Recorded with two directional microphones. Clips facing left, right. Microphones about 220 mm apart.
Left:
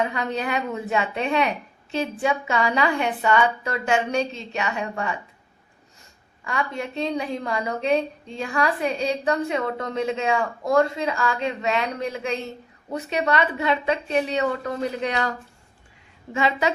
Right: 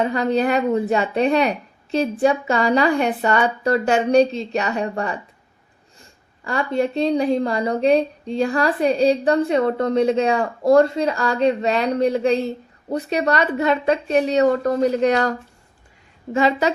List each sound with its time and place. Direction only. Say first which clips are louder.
0.0 s a woman's voice: right 7 dB; 35° right (ahead or behind)
6.4 s a woman's voice: right 8 dB; 35° right (ahead or behind)
16.3 s a woman's voice: right 5 dB; 40° right (ahead or behind)